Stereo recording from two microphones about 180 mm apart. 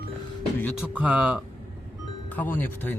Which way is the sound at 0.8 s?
5° right (ahead or behind).